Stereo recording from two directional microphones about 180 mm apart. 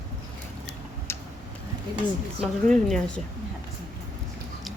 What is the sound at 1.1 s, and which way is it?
Tick-tock, 15° left (ahead or behind).